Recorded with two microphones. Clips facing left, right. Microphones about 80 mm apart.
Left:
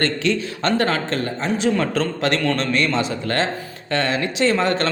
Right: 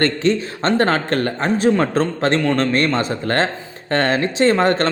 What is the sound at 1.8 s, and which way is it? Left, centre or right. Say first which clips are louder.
A man's voice: right 3 dB; right.